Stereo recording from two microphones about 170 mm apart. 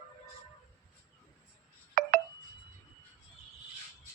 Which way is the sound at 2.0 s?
55° right (ahead or behind).